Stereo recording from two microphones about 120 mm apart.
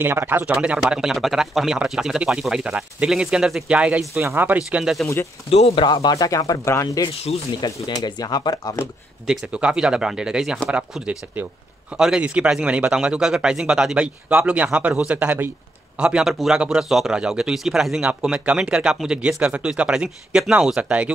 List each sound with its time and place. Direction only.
0.0 s speech: 15° right (ahead or behind)
5.5 s speech: 55° left (ahead or behind)
5.9 s speech: 35° left (ahead or behind)
9.2 s speech: 5° right (ahead or behind)